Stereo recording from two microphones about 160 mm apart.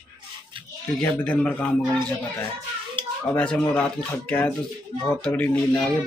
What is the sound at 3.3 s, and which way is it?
Speech, 5° left (ahead or behind).